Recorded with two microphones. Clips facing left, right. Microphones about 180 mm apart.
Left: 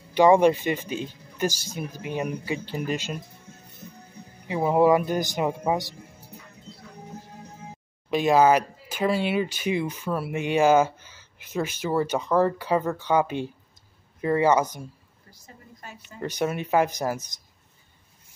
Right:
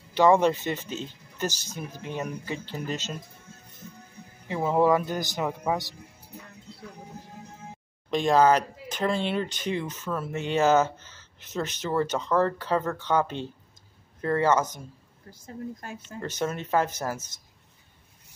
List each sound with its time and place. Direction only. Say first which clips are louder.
0.1 s speech: left 3 dB; 15° left (ahead or behind)
4.5 s speech: left 3 dB; 15° left (ahead or behind)
8.1 s speech: left 2 dB; 5° left (ahead or behind)
15.3 s speech: right 13 dB; 50° right (ahead or behind)
16.2 s speech: left 3 dB; 10° left (ahead or behind)